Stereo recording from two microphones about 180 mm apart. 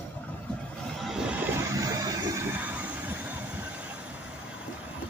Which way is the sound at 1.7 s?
20° right (ahead or behind).